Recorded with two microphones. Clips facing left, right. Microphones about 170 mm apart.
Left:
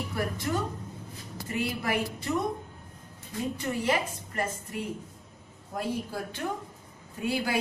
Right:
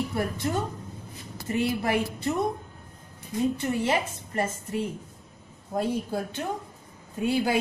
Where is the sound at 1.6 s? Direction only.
25° right (ahead or behind).